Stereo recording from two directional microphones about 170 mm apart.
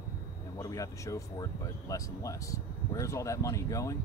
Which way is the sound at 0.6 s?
20° left (ahead or behind).